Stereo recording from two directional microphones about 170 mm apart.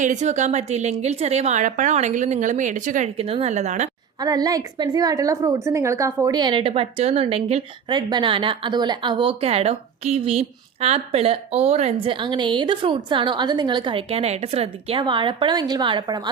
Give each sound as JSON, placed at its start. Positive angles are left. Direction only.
{"t": 0.0, "sound": "a woman's voice", "side_deg": -45}
{"t": 4.2, "sound": "a woman's voice", "side_deg": -20}